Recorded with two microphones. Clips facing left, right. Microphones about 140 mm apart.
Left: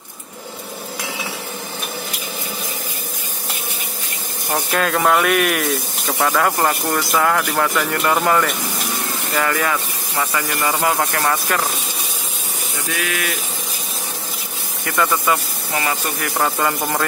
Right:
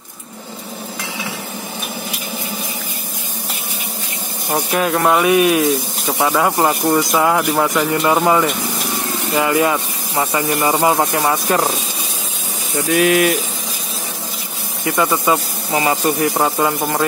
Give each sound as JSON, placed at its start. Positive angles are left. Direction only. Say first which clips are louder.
{"t": 4.6, "sound": "speech", "louder": "right 2 dB", "side_deg": -10}
{"t": 5.2, "sound": "speech", "louder": "right 5 dB", "side_deg": -15}
{"t": 12.9, "sound": "speech", "louder": "right 12 dB", "side_deg": -35}
{"t": 14.9, "sound": "speech", "louder": "right 3 dB", "side_deg": -20}